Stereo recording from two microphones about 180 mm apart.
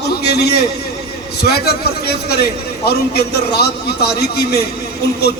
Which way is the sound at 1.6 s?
60° left (ahead or behind).